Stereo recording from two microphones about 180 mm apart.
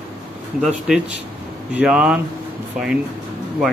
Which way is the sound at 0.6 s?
5° right (ahead or behind).